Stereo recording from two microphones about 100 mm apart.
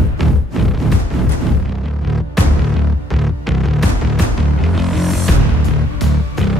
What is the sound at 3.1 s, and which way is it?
Music, centre (ahead or behind).